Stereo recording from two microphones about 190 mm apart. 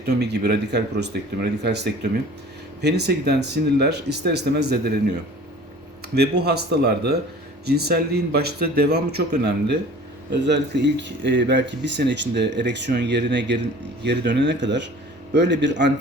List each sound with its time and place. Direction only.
0.0 s speech: 60° right (ahead or behind)
6.1 s speech: 60° right (ahead or behind)